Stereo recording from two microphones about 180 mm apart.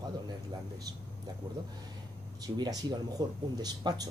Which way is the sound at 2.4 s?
20° right (ahead or behind).